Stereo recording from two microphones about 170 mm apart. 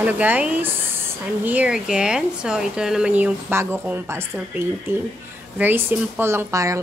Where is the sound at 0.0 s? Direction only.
10° right (ahead or behind).